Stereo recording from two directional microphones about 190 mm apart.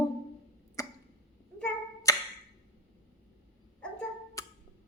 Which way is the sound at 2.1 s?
15° left (ahead or behind).